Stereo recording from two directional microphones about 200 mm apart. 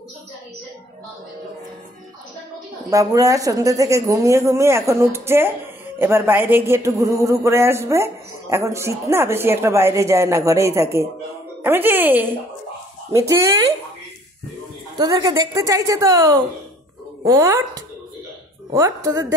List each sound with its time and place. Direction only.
2.9 s speech: 15° right (ahead or behind)
15.0 s speech: 20° right (ahead or behind)